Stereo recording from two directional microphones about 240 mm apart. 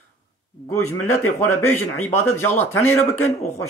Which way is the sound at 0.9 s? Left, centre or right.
Centre.